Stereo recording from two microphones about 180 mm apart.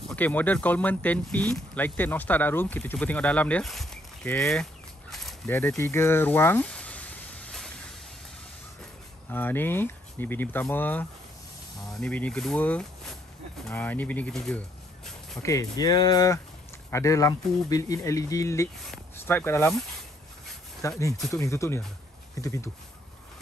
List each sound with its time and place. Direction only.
0.1 s speech: 10° left (ahead or behind)
5.5 s a sound: 10° left (ahead or behind)
9.3 s speech: 10° left (ahead or behind)
15.4 s speech: 20° left (ahead or behind)
20.8 s speech: 20° left (ahead or behind)